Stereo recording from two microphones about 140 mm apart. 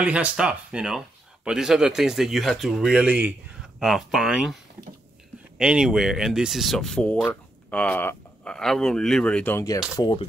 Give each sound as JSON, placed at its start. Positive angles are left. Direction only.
{"t": 0.0, "sound": "speech", "side_deg": -10}
{"t": 5.6, "sound": "speech", "side_deg": -5}
{"t": 9.9, "sound": "speech", "side_deg": 35}